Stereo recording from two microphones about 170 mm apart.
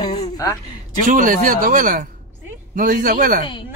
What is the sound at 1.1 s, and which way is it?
Speech, 55° right (ahead or behind).